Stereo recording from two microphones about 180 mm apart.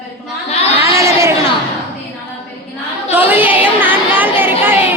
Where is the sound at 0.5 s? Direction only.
35° left (ahead or behind).